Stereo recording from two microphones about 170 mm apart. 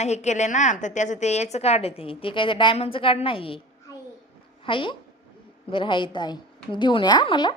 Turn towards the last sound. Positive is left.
turn(degrees=25)  # may be behind; listen again after turning